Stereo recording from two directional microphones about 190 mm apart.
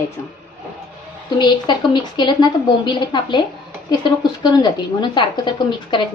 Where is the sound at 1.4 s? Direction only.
25° left (ahead or behind).